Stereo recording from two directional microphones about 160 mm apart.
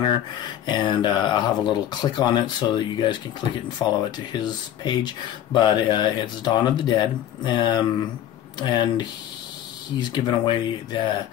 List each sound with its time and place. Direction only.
0.7 s speech: 30° left (ahead or behind)